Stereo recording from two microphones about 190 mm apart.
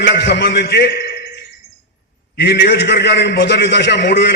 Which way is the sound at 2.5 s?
60° left (ahead or behind).